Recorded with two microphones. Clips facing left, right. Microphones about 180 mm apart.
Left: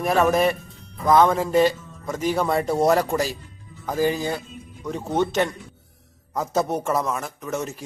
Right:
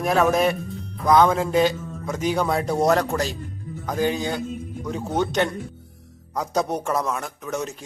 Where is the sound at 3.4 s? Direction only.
50° right (ahead or behind).